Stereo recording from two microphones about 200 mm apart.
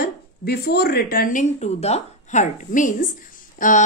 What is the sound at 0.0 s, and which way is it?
Speech, 50° left (ahead or behind).